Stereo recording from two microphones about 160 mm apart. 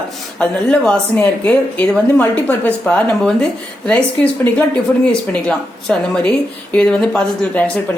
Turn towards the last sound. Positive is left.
turn(degrees=5)  # may be behind; listen again after turning